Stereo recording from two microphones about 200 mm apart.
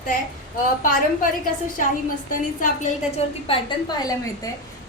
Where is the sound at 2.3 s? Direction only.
40° left (ahead or behind).